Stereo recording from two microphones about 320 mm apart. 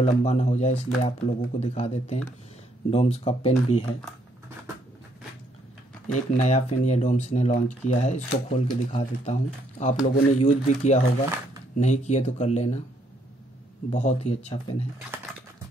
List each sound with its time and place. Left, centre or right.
0.0 s speech: left
6.1 s speech: left
13.9 s speech: centre
15.1 s typing: centre